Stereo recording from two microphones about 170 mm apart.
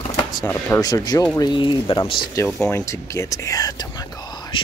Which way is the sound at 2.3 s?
15° left (ahead or behind).